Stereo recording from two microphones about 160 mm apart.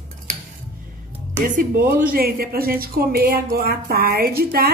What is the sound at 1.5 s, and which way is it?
A woman's voice, 65° right (ahead or behind).